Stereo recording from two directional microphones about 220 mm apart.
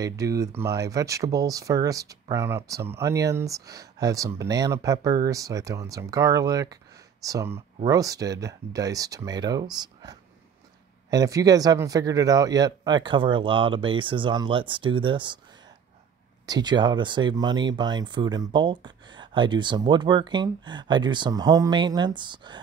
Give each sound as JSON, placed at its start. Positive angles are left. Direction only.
{"t": 0.0, "sound": "speech", "side_deg": -15}
{"t": 16.4, "sound": "speech", "side_deg": -20}